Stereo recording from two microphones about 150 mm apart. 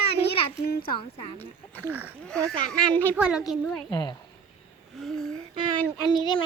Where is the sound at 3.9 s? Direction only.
30° left (ahead or behind).